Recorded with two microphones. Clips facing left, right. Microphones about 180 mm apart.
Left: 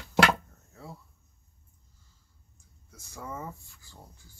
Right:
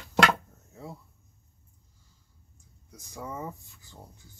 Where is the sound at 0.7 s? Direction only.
20° right (ahead or behind).